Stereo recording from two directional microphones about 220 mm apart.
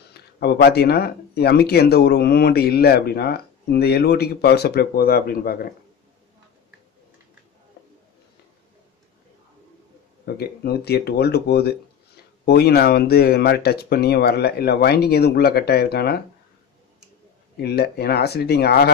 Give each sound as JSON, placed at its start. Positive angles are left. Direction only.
{"t": 0.1, "sound": "speech", "side_deg": 45}
{"t": 10.2, "sound": "speech", "side_deg": 45}
{"t": 17.6, "sound": "speech", "side_deg": 45}